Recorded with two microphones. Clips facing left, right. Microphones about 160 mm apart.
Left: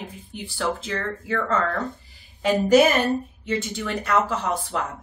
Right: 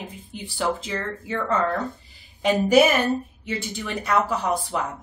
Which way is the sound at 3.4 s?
15° right (ahead or behind).